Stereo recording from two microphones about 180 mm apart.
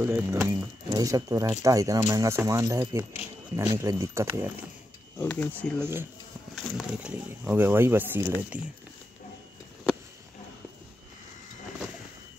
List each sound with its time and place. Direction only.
0.0 s speech: 10° right (ahead or behind)
5.2 s speech: 10° left (ahead or behind)
5.8 s speech: 15° right (ahead or behind)